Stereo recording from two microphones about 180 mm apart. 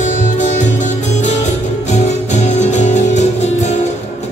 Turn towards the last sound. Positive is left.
turn(degrees=40)  # may be behind; listen again after turning